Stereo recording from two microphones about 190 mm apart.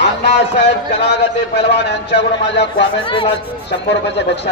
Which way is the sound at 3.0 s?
25° left (ahead or behind).